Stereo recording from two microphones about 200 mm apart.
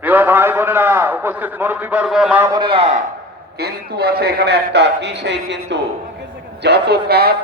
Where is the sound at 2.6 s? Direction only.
30° right (ahead or behind).